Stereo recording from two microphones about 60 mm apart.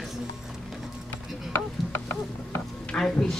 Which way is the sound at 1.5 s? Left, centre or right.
Left.